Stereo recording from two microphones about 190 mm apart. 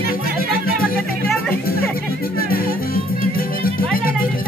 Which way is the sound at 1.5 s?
50° left (ahead or behind).